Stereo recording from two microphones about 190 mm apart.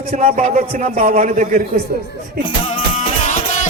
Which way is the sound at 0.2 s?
35° right (ahead or behind).